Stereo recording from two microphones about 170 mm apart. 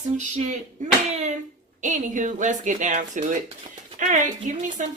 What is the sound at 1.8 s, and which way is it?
Speech, 45° right (ahead or behind).